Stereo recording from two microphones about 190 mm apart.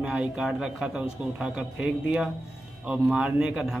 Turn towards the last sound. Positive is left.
turn(degrees=0)  # may be behind; listen again after turning